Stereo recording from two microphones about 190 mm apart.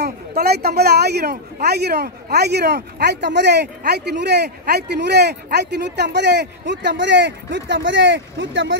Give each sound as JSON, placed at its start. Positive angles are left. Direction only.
{"t": 0.4, "sound": "speech", "side_deg": -55}